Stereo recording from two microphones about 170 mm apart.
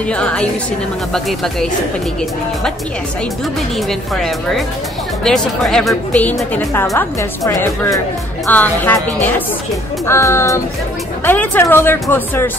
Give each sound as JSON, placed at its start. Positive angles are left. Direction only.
{"t": 0.1, "sound": "a woman's voice", "side_deg": 5}
{"t": 4.2, "sound": "a woman's voice", "side_deg": 0}